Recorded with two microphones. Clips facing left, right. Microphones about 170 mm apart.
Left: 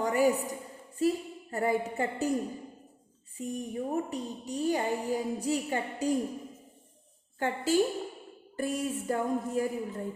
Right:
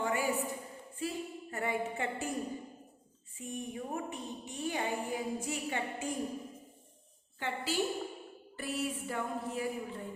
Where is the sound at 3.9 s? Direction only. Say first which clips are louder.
Left 6 dB; 40° left (ahead or behind).